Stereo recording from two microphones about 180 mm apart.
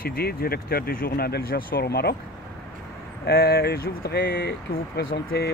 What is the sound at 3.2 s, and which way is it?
Speech, 60° left (ahead or behind).